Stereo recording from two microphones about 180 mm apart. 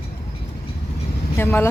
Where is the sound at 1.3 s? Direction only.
10° left (ahead or behind).